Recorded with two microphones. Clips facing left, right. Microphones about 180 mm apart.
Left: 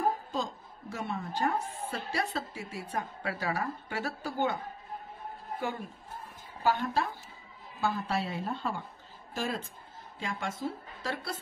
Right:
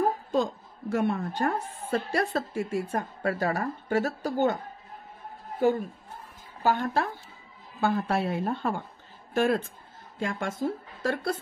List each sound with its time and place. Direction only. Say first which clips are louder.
0.3 s a woman's voice: right 8 dB; 55° right (ahead or behind)
6.6 s a woman's voice: right 3 dB; 45° right (ahead or behind)